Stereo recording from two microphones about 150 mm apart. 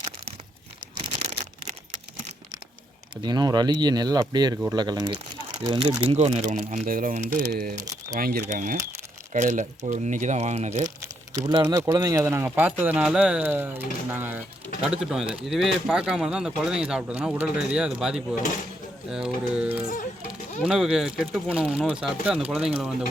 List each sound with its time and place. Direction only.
0.9 s a sound: 40° right (ahead or behind)
3.2 s speech: 30° right (ahead or behind)
6.1 s speech: 45° right (ahead or behind); by 7.8 s 80° right
8.2 s speech: 65° right (ahead or behind); by 10.9 s 50° right (ahead or behind)
11.0 s speech: 20° right (ahead or behind); by 23.0 s 5° right (ahead or behind)